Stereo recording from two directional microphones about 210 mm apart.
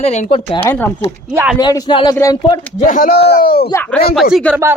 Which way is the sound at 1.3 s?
10° right (ahead or behind).